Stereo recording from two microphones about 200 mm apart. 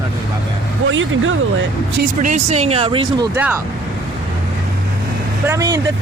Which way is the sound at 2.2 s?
35° right (ahead or behind).